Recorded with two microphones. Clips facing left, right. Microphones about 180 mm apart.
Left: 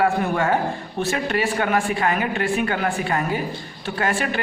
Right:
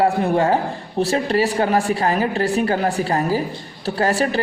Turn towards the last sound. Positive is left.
turn(degrees=-35)  # may be behind; listen again after turning